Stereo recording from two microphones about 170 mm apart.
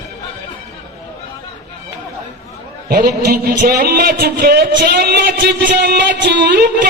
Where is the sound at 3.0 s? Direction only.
55° right (ahead or behind).